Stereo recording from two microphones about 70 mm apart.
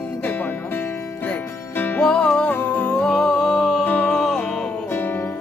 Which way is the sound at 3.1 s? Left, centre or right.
Centre.